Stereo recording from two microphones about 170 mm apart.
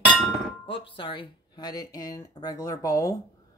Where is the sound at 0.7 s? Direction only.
30° left (ahead or behind).